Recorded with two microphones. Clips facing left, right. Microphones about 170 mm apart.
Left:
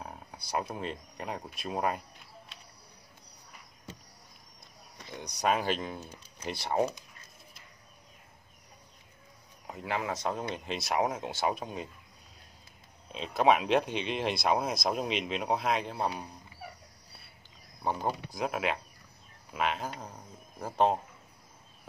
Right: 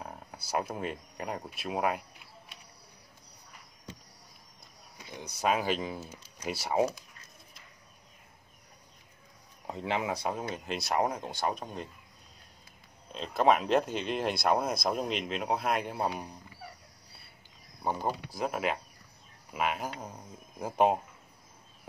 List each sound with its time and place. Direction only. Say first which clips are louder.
0.0 s speech: right 1 dB; centre (ahead or behind)
5.4 s speech: even; 5° right (ahead or behind)
5.9 s speech: right 1 dB; 15° left (ahead or behind)
6.4 s speech: right 1 dB; 5° right (ahead or behind)
6.9 s a sound: right 1 dB; 20° left (ahead or behind)
9.7 s speech: right 2 dB; 25° right (ahead or behind); by 11.9 s 5° left (ahead or behind)
13.1 s speech: even; centre (ahead or behind)
17.8 s speech: even; 5° right (ahead or behind)